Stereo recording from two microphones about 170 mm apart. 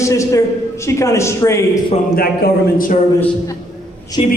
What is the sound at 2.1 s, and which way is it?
Speech, 60° left (ahead or behind).